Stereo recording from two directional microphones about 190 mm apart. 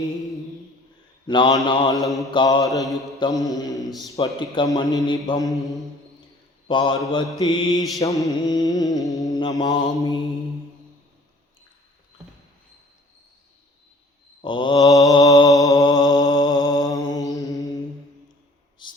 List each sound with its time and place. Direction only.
1.3 s a man's voice: 25° left (ahead or behind)
6.7 s a man's voice: 25° left (ahead or behind)
14.4 s a man's voice: 25° left (ahead or behind)
15.6 s mantra: 20° left (ahead or behind)
18.8 s a sound: 25° left (ahead or behind)